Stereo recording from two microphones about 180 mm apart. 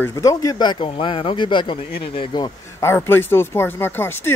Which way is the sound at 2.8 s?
15° left (ahead or behind).